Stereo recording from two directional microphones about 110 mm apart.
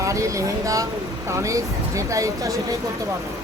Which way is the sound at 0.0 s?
30° right (ahead or behind).